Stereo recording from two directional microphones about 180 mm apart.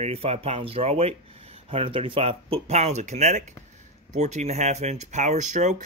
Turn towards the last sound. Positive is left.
turn(degrees=-40)  # may be behind; listen again after turning